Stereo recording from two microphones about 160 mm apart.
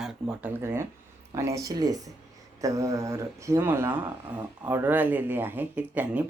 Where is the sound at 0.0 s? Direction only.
5° right (ahead or behind).